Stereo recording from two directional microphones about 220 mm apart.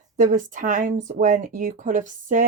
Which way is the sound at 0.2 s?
35° right (ahead or behind).